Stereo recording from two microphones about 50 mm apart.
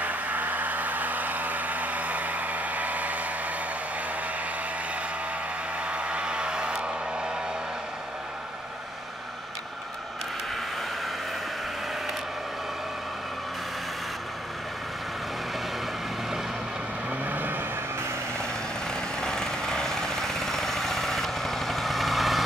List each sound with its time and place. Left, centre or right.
0.0 s a sound: right
5.8 s vehicle: right
17.1 s vehicle: right
18.4 s vehicle: centre